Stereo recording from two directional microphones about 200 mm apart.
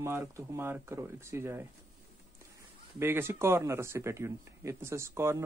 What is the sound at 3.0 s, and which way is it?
Speech, 10° right (ahead or behind).